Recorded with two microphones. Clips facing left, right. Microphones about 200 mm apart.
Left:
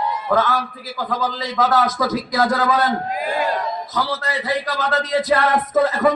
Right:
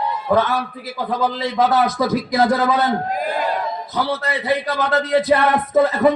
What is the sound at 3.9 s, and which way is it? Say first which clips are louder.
Speech: right 2 dB; 60° right (ahead or behind).